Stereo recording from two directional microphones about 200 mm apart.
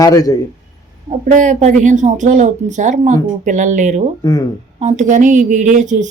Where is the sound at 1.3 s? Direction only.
40° right (ahead or behind).